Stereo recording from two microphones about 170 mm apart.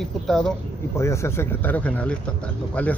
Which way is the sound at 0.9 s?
15° left (ahead or behind).